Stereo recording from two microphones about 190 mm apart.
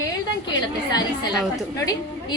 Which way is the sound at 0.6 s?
20° left (ahead or behind).